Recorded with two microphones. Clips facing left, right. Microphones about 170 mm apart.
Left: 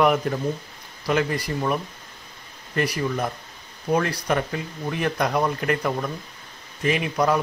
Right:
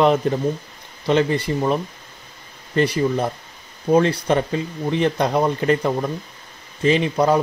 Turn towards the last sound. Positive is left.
turn(degrees=-30)  # may be behind; listen again after turning